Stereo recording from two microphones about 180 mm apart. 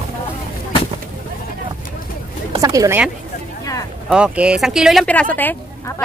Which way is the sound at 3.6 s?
20° left (ahead or behind).